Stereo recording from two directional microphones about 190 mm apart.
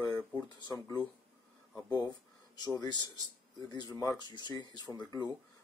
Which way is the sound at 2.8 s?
20° left (ahead or behind).